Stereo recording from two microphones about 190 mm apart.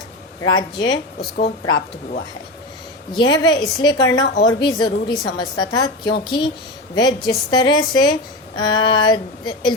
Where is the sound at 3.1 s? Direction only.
20° left (ahead or behind).